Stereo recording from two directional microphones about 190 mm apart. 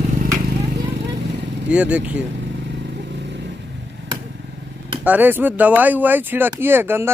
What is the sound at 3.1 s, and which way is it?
Vehicle, 65° right (ahead or behind).